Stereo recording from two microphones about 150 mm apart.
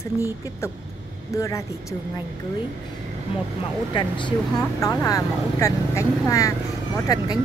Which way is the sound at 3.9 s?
30° left (ahead or behind).